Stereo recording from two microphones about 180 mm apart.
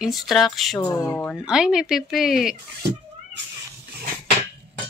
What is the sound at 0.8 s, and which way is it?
Speech, 15° left (ahead or behind).